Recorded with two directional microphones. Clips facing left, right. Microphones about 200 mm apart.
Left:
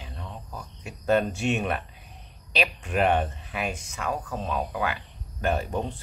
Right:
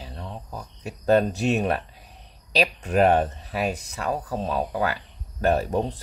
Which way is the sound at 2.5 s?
40° right (ahead or behind).